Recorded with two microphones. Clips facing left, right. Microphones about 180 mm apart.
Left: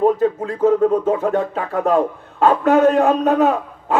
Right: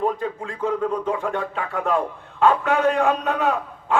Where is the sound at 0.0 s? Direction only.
40° left (ahead or behind).